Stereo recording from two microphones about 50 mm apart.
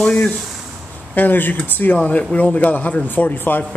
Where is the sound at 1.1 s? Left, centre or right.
Left.